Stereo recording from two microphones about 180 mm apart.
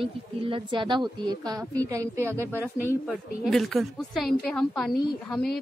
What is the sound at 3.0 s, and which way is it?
A woman's voice, centre (ahead or behind).